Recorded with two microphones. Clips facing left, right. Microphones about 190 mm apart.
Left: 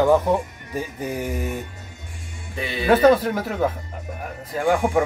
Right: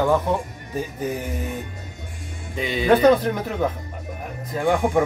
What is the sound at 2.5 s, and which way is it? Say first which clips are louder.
Speech: right 2 dB; 15° right (ahead or behind).